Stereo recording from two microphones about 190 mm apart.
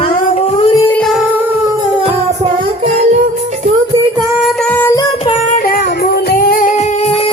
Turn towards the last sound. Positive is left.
turn(degrees=50)  # may be behind; listen again after turning